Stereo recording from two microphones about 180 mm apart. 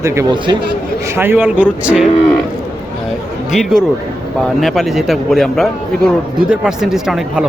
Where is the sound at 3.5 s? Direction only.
Centre (ahead or behind).